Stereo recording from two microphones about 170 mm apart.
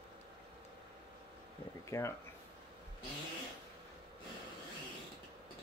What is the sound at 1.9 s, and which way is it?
Speech, 15° left (ahead or behind).